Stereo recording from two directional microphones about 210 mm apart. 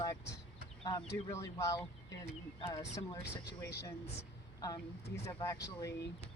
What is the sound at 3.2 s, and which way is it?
Speech, 50° left (ahead or behind).